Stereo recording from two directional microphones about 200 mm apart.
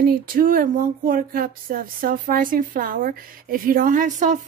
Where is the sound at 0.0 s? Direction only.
45° right (ahead or behind).